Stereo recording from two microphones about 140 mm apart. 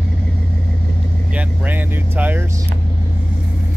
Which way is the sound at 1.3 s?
10° right (ahead or behind).